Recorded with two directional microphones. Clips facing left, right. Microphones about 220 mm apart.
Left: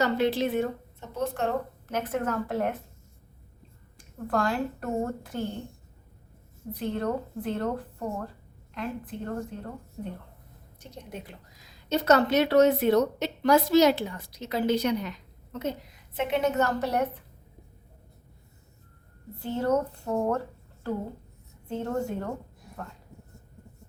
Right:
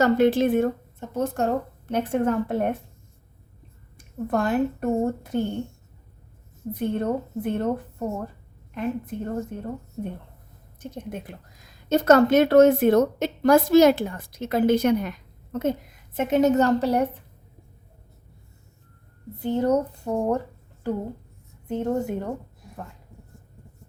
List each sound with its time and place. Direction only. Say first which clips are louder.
0.0 s a woman's voice: right 6 dB; 50° right (ahead or behind)
1.9 s a woman's voice: right 6 dB; 30° right (ahead or behind)
3.9 s a woman's voice: right 4 dB; 20° right (ahead or behind)
6.7 s a woman's voice: right 4 dB; 20° right (ahead or behind)
10.8 s a woman's voice: right 7 dB; 50° right (ahead or behind)
16.6 s a woman's voice: right 7 dB; 30° right (ahead or behind)
19.4 s speech: right 4 dB; 15° right (ahead or behind)
21.8 s a woman's voice: right 4 dB; 20° right (ahead or behind)